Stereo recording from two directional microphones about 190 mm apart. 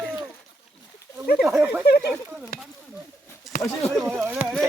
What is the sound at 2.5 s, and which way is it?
Speech, 55° left (ahead or behind).